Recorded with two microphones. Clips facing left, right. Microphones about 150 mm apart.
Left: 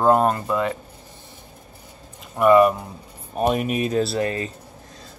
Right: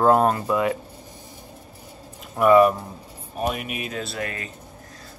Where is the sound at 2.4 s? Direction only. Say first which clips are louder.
Left 1 dB; centre (ahead or behind).